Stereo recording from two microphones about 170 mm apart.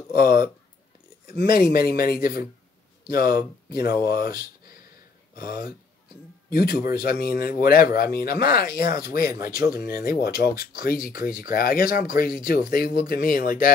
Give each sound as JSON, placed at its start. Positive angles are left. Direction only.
{"t": 0.1, "sound": "speech", "side_deg": 65}